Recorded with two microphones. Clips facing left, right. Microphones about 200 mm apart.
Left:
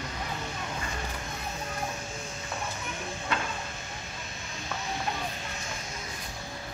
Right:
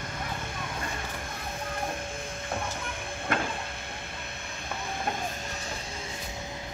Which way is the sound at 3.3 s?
50° right (ahead or behind).